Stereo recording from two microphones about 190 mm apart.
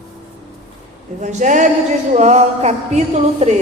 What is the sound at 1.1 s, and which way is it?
A woman's voice, 40° right (ahead or behind).